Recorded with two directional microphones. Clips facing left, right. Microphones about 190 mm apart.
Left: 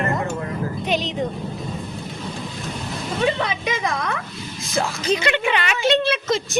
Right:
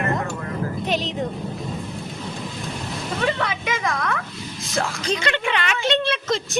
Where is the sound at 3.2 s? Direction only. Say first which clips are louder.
Left 3 dB; 20° left (ahead or behind).